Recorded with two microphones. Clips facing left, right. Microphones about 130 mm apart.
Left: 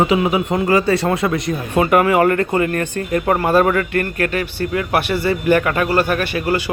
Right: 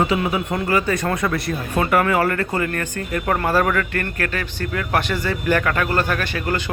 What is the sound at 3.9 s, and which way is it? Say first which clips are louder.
Speech: left 5 dB; 20° left (ahead or behind).